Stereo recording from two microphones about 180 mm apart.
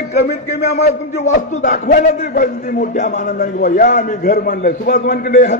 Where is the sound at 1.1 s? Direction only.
40° left (ahead or behind).